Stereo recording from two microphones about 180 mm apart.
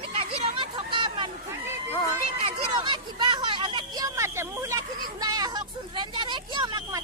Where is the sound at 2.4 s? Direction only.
25° right (ahead or behind).